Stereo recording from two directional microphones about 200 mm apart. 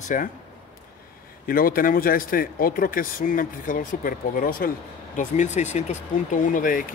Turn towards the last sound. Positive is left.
turn(degrees=45)  # may be behind; listen again after turning